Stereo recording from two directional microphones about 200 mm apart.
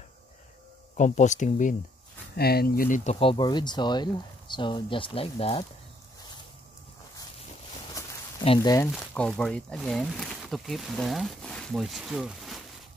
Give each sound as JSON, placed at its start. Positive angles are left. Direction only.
{"t": 0.9, "sound": "speech", "side_deg": 40}
{"t": 2.3, "sound": "speech", "side_deg": 50}
{"t": 8.5, "sound": "speech", "side_deg": 15}
{"t": 8.9, "sound": "speech", "side_deg": 5}